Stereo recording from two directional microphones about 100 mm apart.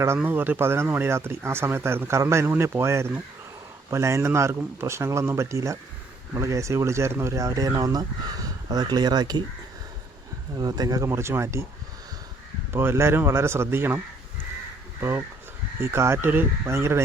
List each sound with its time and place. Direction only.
0.2 s speech: 20° right (ahead or behind); by 9.4 s 45° right (ahead or behind)
10.6 s speech: 40° right (ahead or behind)
12.7 s speech: 25° right (ahead or behind)
15.8 s speech: 25° right (ahead or behind)